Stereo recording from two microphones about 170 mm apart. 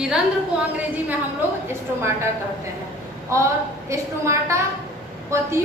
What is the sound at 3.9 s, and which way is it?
Speech, 15° right (ahead or behind).